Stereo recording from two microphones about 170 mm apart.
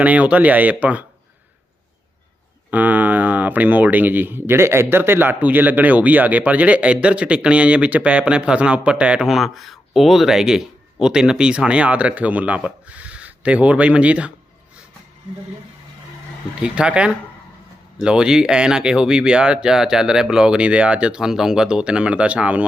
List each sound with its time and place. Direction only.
0.0 s speech: 10° right (ahead or behind)
2.6 s speech: 10° right (ahead or behind)
16.6 s speech: 5° right (ahead or behind)